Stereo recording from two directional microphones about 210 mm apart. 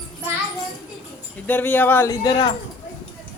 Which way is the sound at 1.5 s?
10° left (ahead or behind).